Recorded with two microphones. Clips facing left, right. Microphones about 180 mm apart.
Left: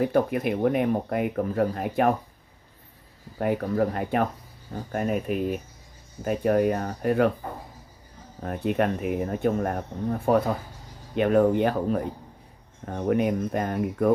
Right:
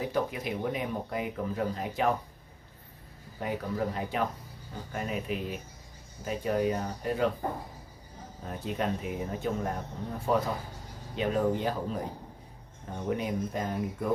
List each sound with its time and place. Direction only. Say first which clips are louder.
0.0 s speech: left 8 dB; 60° left (ahead or behind)
3.3 s speech: left 8 dB; 55° left (ahead or behind)
8.4 s speech: left 8 dB; 60° left (ahead or behind)